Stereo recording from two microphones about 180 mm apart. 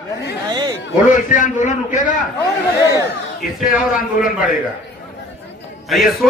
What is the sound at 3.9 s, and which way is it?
Speech, 45° left (ahead or behind).